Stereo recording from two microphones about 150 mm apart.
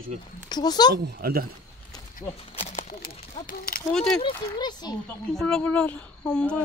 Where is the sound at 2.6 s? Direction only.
55° left (ahead or behind).